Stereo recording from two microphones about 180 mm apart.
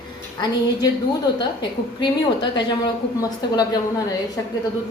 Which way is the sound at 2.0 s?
25° left (ahead or behind).